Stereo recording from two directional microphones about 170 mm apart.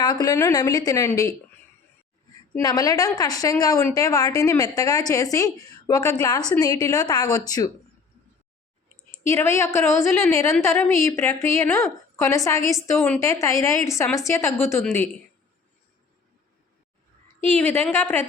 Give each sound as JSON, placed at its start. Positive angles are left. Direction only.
{"t": 0.0, "sound": "a woman's voice", "side_deg": 25}
{"t": 2.6, "sound": "a woman's voice", "side_deg": 20}
{"t": 9.2, "sound": "a woman's voice", "side_deg": 15}
{"t": 17.5, "sound": "a woman's voice", "side_deg": 10}